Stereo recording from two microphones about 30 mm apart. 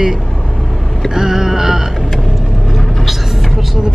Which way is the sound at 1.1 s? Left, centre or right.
Centre.